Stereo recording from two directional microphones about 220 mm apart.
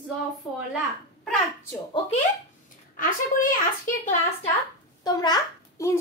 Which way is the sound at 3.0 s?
40° left (ahead or behind).